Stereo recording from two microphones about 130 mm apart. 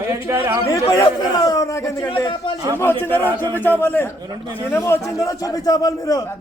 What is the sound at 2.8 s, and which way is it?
A man's voice, 15° left (ahead or behind).